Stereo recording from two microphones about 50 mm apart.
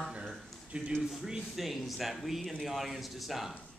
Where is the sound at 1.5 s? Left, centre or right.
Centre.